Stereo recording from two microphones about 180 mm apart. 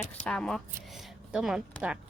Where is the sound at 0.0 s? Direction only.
5° left (ahead or behind).